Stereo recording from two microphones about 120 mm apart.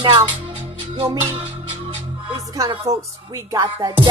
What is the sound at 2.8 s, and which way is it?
Speech, 25° right (ahead or behind).